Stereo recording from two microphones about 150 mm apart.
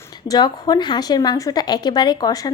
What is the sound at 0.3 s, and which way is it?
Speech, 25° left (ahead or behind).